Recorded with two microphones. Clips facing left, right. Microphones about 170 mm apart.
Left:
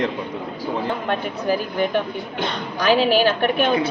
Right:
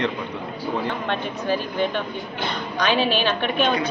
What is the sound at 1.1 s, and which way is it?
Speech, 10° left (ahead or behind).